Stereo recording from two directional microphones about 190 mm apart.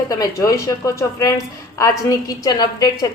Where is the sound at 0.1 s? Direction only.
20° left (ahead or behind).